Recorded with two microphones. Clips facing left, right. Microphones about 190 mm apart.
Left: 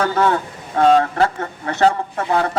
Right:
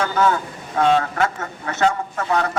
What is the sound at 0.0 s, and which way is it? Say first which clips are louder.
Speech: left 2 dB; 35° left (ahead or behind).